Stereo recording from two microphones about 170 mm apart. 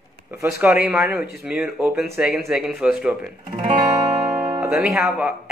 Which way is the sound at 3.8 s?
20° right (ahead or behind).